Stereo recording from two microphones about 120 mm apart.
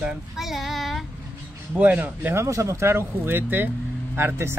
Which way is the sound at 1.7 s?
15° right (ahead or behind).